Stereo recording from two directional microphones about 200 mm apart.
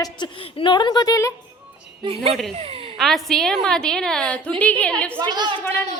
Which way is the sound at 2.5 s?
30° right (ahead or behind).